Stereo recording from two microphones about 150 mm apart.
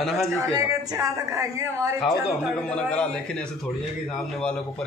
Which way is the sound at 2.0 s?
5° left (ahead or behind).